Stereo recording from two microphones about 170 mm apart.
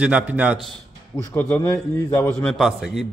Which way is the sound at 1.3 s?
15° left (ahead or behind).